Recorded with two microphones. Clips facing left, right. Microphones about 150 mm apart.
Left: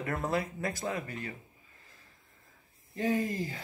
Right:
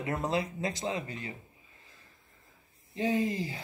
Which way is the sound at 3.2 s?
45° left (ahead or behind).